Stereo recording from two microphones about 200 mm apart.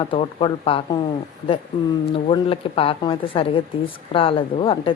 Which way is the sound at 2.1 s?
25° left (ahead or behind).